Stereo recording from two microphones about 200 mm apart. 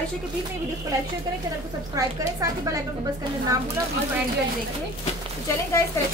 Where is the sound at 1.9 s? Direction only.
15° right (ahead or behind).